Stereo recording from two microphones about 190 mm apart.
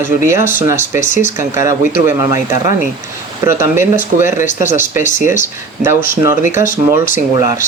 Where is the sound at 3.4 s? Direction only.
15° right (ahead or behind).